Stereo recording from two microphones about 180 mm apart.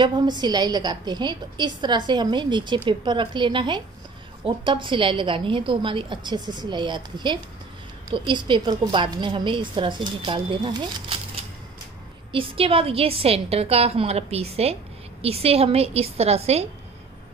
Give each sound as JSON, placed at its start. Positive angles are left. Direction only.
{"t": 0.0, "sound": "a woman's voice", "side_deg": -25}
{"t": 12.3, "sound": "a woman's voice", "side_deg": -30}